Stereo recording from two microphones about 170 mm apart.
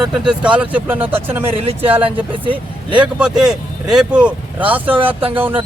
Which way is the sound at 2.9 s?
5° right (ahead or behind).